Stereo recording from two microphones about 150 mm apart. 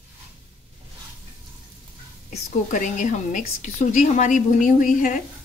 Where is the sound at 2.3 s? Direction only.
55° left (ahead or behind).